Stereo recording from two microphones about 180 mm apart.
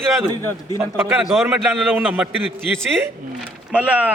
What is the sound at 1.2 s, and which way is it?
A man's voice, centre (ahead or behind).